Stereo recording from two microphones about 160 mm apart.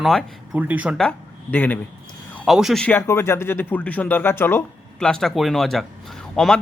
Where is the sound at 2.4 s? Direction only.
Centre (ahead or behind).